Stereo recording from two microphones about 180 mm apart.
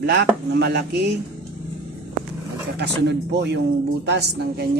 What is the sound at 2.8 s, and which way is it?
Speech, 70° right (ahead or behind).